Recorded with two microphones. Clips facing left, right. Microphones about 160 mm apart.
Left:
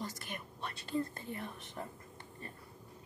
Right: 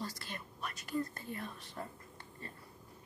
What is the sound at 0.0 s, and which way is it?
Speech, 20° left (ahead or behind).